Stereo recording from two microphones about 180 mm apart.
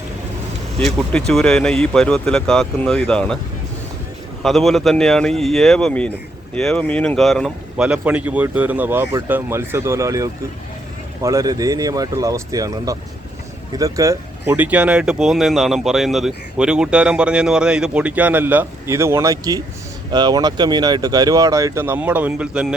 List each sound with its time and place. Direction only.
0.9 s speech: centre (ahead or behind)
4.4 s speech: centre (ahead or behind)